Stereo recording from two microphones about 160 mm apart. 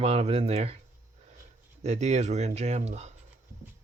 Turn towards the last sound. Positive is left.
turn(degrees=-45)  # may be behind; listen again after turning